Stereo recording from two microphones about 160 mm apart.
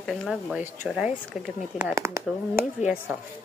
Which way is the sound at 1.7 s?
15° right (ahead or behind).